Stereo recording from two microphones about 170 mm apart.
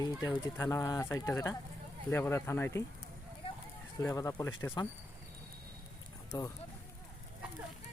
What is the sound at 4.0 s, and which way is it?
Speech, 20° left (ahead or behind).